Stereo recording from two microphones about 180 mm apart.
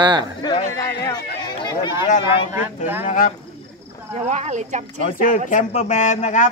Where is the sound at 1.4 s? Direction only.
25° left (ahead or behind).